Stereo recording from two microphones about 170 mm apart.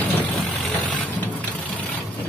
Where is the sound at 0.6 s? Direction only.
10° left (ahead or behind).